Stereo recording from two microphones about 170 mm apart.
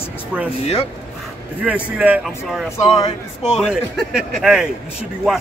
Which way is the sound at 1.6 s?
10° right (ahead or behind).